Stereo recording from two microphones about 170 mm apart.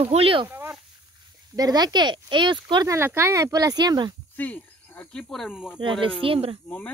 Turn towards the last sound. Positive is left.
turn(degrees=-35)  # may be behind; listen again after turning